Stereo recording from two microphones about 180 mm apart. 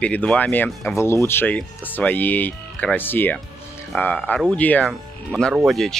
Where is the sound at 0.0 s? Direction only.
5° left (ahead or behind).